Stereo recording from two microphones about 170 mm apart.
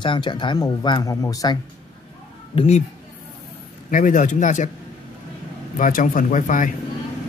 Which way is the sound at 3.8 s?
50° left (ahead or behind).